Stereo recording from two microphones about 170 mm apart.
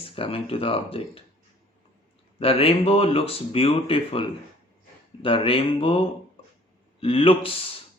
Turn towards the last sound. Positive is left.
turn(degrees=35)  # may be behind; listen again after turning